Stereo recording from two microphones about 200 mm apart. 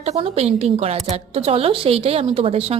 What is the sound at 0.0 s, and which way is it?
A woman's voice, 30° right (ahead or behind).